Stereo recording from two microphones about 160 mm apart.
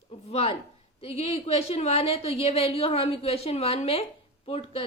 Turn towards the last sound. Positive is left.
turn(degrees=40)  # may be behind; listen again after turning